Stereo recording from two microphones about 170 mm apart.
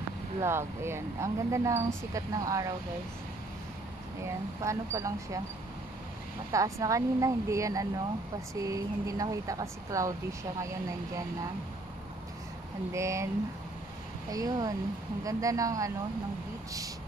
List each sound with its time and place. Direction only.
0.4 s speech: 15° right (ahead or behind)
4.6 s speech: 20° right (ahead or behind)
6.5 s speech: 20° right (ahead or behind)
12.9 s speech: 15° right (ahead or behind)
14.3 s speech: 20° right (ahead or behind)